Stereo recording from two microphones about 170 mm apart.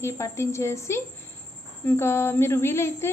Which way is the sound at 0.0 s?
15° left (ahead or behind).